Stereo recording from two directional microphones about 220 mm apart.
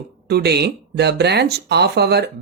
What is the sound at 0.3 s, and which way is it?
Speech, 50° right (ahead or behind).